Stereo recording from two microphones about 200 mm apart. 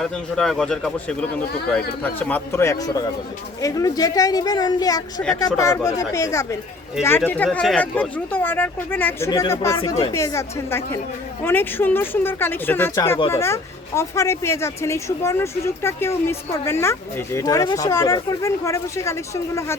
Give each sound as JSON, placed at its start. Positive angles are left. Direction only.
{"t": 0.0, "sound": "speech", "side_deg": 0}
{"t": 2.1, "sound": "speech", "side_deg": 10}